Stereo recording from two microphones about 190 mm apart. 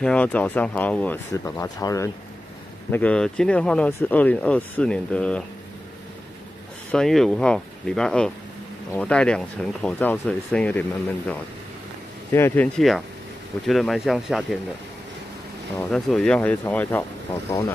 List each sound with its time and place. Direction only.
0.0 s speech: 5° left (ahead or behind)
6.9 s speech: 5° left (ahead or behind)
15.8 s speech: 5° left (ahead or behind)